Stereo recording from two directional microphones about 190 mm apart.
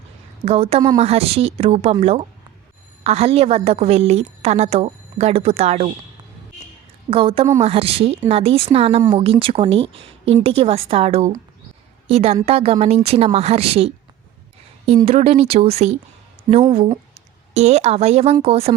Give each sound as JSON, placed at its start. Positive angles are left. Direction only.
{"t": 0.4, "sound": "a woman's voice", "side_deg": -30}
{"t": 7.1, "sound": "a woman's voice", "side_deg": -30}
{"t": 15.0, "sound": "speech", "side_deg": -30}